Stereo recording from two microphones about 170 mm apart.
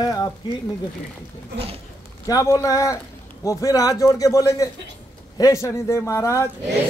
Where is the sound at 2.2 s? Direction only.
20° left (ahead or behind).